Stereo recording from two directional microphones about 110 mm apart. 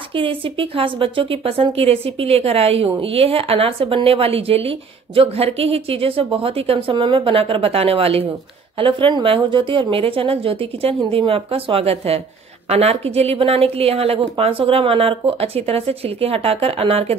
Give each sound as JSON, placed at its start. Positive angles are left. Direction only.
{"t": 0.1, "sound": "speech", "side_deg": -55}
{"t": 8.7, "sound": "speech", "side_deg": -50}